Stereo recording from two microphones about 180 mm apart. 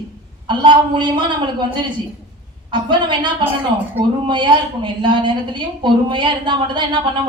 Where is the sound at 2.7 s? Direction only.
25° right (ahead or behind).